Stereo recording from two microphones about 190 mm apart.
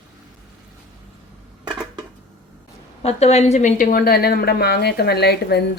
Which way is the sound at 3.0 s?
35° left (ahead or behind).